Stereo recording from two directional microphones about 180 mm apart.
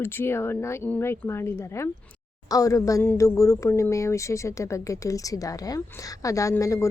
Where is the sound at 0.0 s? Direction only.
10° left (ahead or behind).